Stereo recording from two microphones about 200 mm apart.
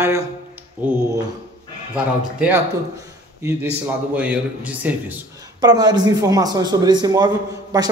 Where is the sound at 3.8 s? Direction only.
5° right (ahead or behind).